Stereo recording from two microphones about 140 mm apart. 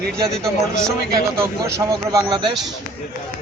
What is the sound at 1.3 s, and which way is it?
Speech, 20° right (ahead or behind).